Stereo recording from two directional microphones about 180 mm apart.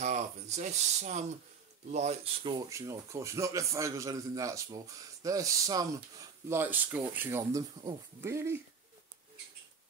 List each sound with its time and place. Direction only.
0.0 s speech: 40° right (ahead or behind)
2.5 s a man's voice: 20° right (ahead or behind)